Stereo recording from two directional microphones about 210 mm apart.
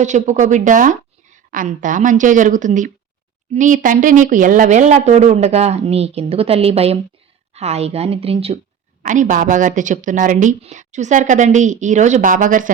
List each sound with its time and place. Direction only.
0.0 s a woman's voice: 35° right (ahead or behind)